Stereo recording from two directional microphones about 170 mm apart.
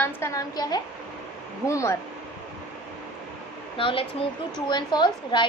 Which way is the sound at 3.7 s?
30° left (ahead or behind).